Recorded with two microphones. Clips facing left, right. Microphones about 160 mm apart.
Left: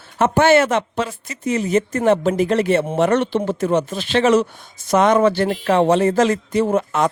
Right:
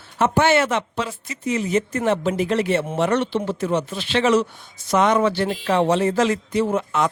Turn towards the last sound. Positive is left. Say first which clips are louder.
# left 3 dB
turn(degrees=45)  # may be behind; listen again after turning